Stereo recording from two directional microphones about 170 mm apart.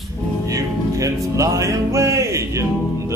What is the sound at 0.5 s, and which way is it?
Music, 20° right (ahead or behind).